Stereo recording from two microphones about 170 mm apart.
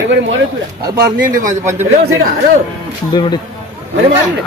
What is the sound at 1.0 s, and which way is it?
Speech, 60° right (ahead or behind).